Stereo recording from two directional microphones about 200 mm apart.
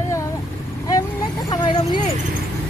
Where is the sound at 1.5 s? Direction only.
20° left (ahead or behind).